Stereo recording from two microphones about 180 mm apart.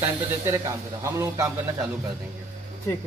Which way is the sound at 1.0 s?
15° right (ahead or behind).